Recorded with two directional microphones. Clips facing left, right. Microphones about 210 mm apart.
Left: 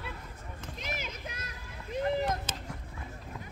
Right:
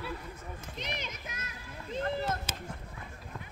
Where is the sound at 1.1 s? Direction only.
35° left (ahead or behind).